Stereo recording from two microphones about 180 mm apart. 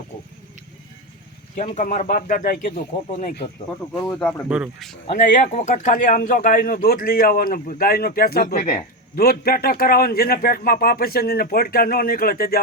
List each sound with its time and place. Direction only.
1.5 s speech: 40° left (ahead or behind)
3.9 s speech: 10° left (ahead or behind)
4.4 s speech: 10° right (ahead or behind)
5.4 s a man's voice: 40° left (ahead or behind); by 12.6 s 55° left (ahead or behind)